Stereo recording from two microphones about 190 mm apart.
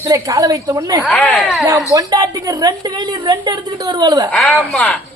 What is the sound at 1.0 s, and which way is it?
Speech, 5° left (ahead or behind).